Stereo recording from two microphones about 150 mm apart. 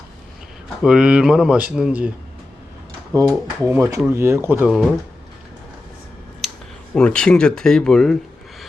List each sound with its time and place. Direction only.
0.8 s speech: 5° right (ahead or behind)
3.1 s speech: 20° right (ahead or behind)
4.7 s speech: centre (ahead or behind)
6.9 s speech: 5° left (ahead or behind)